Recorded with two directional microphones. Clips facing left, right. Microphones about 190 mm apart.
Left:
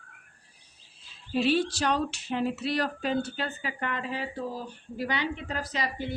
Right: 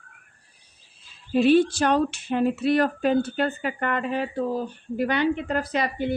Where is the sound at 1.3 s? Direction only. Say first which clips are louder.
Right 8 dB; 50° right (ahead or behind).